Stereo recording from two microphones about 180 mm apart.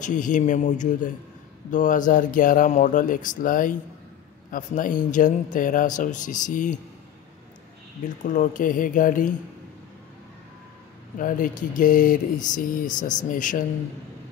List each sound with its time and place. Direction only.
0.0 s speech: 45° left (ahead or behind)
8.3 s speech: 45° left (ahead or behind)
11.1 s speech: 50° left (ahead or behind)